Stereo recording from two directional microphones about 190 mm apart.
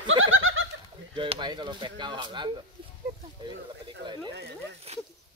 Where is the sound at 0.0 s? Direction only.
90° right.